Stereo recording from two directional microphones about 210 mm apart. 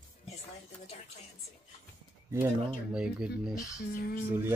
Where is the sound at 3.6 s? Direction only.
15° left (ahead or behind).